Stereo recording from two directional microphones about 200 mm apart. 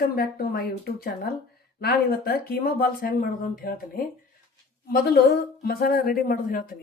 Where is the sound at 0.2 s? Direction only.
50° left (ahead or behind).